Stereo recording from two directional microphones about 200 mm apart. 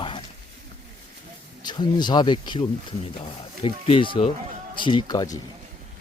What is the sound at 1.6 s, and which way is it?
Speech, 20° left (ahead or behind).